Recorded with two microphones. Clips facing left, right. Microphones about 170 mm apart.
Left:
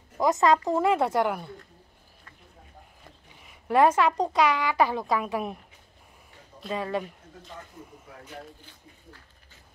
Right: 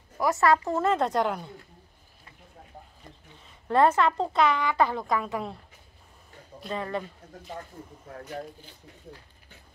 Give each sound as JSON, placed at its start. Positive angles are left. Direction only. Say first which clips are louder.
{"t": 0.2, "sound": "speech", "louder": "left 1 dB", "side_deg": 20}
{"t": 3.3, "sound": "speech", "louder": "left 1 dB", "side_deg": 10}
{"t": 6.7, "sound": "speech", "louder": "left 2 dB", "side_deg": 15}